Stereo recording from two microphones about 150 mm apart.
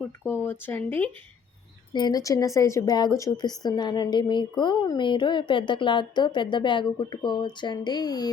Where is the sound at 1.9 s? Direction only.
30° left (ahead or behind).